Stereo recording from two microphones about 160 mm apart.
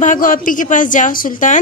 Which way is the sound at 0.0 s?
55° left (ahead or behind).